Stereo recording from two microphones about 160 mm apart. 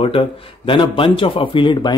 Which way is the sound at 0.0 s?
35° left (ahead or behind).